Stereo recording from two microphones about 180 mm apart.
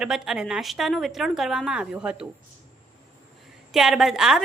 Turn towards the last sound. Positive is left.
turn(degrees=0)  # may be behind; listen again after turning